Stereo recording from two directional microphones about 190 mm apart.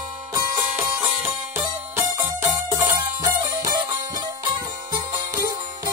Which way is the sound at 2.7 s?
20° right (ahead or behind).